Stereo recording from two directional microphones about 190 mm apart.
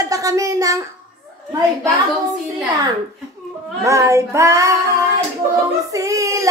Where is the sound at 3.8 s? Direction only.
15° right (ahead or behind).